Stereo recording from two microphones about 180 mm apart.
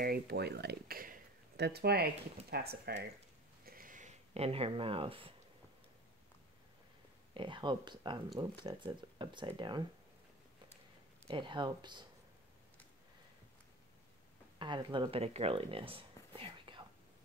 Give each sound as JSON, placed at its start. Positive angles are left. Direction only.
{"t": 0.0, "sound": "speech", "side_deg": -60}
{"t": 3.6, "sound": "a sound", "side_deg": -50}
{"t": 7.3, "sound": "speech", "side_deg": -25}
{"t": 11.2, "sound": "speech", "side_deg": -25}
{"t": 14.6, "sound": "speech", "side_deg": -25}